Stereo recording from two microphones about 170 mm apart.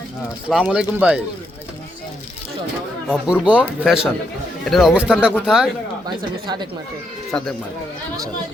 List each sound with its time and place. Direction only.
0.4 s speech: 5° right (ahead or behind)
3.4 s speech: 5° right (ahead or behind)
6.1 s speech: 25° right (ahead or behind)
7.3 s speech: 5° left (ahead or behind)